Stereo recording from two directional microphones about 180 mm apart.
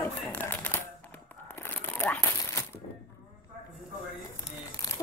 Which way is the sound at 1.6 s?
10° left (ahead or behind).